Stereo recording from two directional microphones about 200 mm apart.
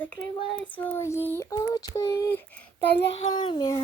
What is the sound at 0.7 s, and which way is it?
Child singing, 10° left (ahead or behind).